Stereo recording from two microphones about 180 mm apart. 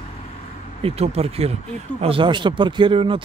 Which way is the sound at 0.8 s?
35° right (ahead or behind).